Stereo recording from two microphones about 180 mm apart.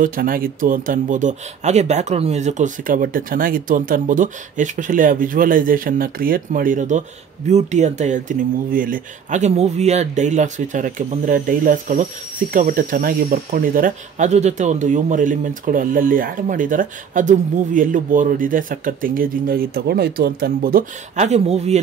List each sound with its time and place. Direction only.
0.0 s speech: 50° right (ahead or behind)
21.3 s speech: 35° right (ahead or behind)